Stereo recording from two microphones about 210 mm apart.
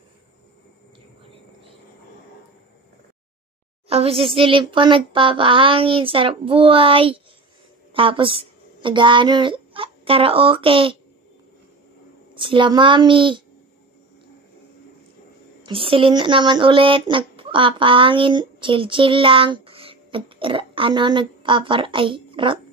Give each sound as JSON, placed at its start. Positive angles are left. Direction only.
{"t": 3.9, "sound": "speech", "side_deg": -25}
{"t": 12.4, "sound": "speech", "side_deg": -25}
{"t": 15.6, "sound": "speech", "side_deg": -25}